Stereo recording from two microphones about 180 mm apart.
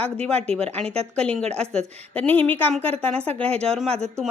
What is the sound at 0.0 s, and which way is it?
A woman's voice, 5° left (ahead or behind).